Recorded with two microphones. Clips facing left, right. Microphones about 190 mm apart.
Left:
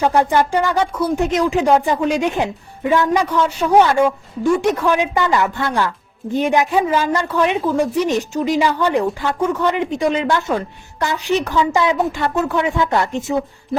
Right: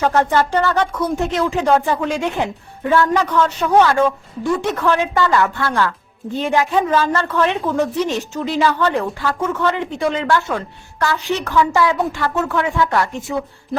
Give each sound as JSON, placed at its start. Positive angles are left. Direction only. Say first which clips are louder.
{"t": 0.0, "sound": "a man's voice", "louder": "left 1 dB", "side_deg": 15}